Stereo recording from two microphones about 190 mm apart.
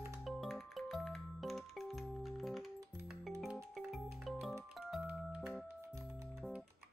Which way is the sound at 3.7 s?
Centre (ahead or behind).